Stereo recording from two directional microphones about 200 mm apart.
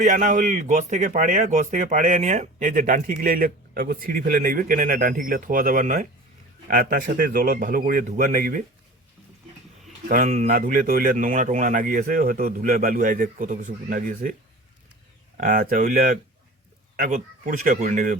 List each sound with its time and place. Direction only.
0.0 s a man's voice: 40° right (ahead or behind)
10.1 s a man's voice: 40° right (ahead or behind)
15.4 s a man's voice: 40° right (ahead or behind)